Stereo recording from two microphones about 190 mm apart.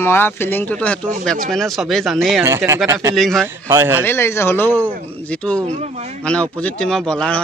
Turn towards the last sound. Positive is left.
turn(degrees=5)  # may be behind; listen again after turning